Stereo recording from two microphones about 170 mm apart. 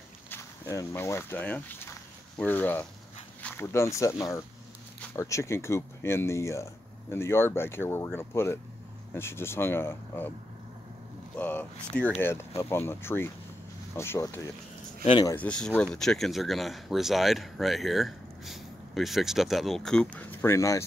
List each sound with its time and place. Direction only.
0.3 s speech: 15° left (ahead or behind)
11.3 s speech: 10° left (ahead or behind); by 15.3 s 25° left (ahead or behind)
15.3 s speech: 5° left (ahead or behind)